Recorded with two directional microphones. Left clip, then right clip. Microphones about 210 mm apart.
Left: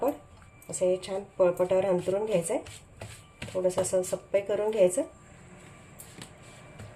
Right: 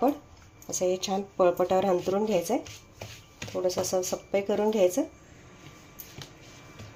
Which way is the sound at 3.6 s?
25° right (ahead or behind).